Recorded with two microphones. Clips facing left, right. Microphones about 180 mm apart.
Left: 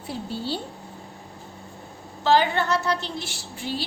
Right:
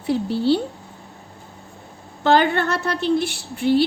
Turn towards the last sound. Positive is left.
turn(degrees=-60)  # may be behind; listen again after turning